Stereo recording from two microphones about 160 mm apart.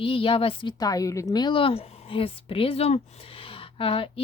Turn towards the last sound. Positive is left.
turn(degrees=35)  # may be behind; listen again after turning